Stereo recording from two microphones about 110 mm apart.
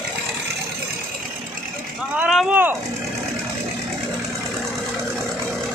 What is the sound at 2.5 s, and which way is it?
Vehicle, 15° right (ahead or behind).